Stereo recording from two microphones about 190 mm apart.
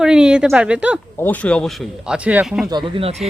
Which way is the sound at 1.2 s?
10° left (ahead or behind).